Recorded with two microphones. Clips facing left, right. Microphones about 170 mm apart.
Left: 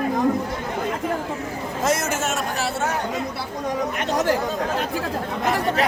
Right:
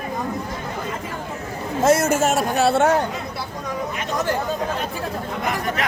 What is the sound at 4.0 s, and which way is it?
Speech, 80° left.